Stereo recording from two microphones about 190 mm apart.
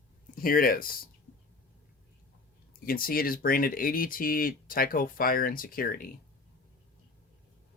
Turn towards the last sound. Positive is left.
turn(degrees=50)  # may be behind; listen again after turning